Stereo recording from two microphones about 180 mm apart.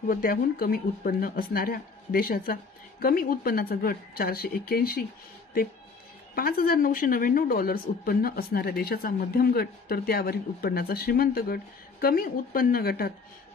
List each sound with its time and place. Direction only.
0.0 s speech: 50° left (ahead or behind)
6.3 s speech: 55° left (ahead or behind)